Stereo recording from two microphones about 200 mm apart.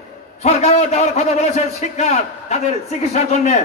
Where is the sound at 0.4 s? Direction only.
30° left (ahead or behind).